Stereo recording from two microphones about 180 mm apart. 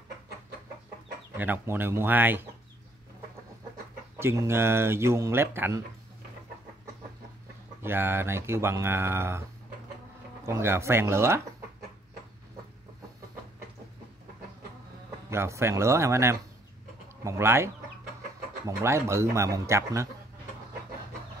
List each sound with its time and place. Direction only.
1.3 s speech: 10° right (ahead or behind)
4.2 s speech: 15° right (ahead or behind)
7.8 s speech: 10° right (ahead or behind)
10.4 s speech: 15° right (ahead or behind)
15.2 s speech: 15° right (ahead or behind)
18.7 s speech: 15° right (ahead or behind)